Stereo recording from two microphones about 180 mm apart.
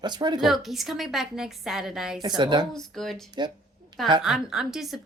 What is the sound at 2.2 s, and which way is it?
Speech, 25° right (ahead or behind).